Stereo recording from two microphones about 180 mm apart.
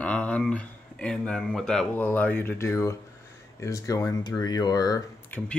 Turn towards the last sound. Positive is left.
turn(degrees=10)  # may be behind; listen again after turning